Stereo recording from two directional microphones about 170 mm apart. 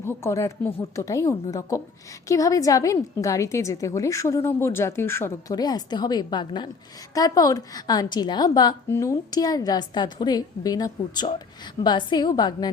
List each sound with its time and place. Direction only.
0.0 s a woman's voice: 15° left (ahead or behind)